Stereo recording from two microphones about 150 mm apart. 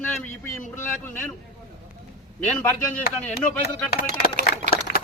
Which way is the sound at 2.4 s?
10° left (ahead or behind).